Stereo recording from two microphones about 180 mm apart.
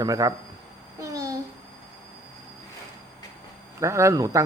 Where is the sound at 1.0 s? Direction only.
15° right (ahead or behind).